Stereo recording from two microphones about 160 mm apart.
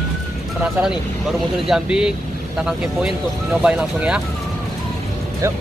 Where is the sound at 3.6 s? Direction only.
5° right (ahead or behind).